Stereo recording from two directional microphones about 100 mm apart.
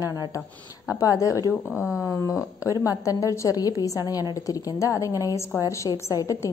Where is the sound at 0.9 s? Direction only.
35° left (ahead or behind).